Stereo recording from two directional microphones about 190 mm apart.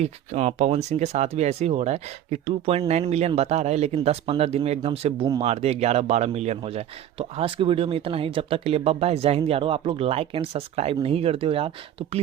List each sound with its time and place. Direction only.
0.0 s speech: 35° right (ahead or behind)